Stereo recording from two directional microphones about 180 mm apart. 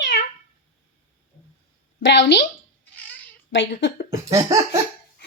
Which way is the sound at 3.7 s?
60° left (ahead or behind).